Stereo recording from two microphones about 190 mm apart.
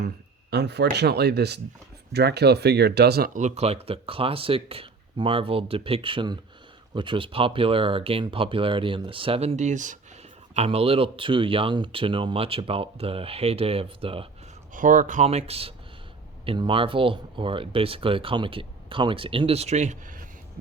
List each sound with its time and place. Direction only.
0.5 s speech: 65° right (ahead or behind); by 14.3 s 30° right (ahead or behind)
14.7 s speech: 45° right (ahead or behind)